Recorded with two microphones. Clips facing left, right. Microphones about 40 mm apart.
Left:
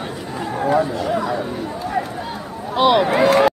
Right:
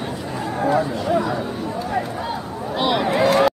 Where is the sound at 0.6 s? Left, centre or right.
Centre.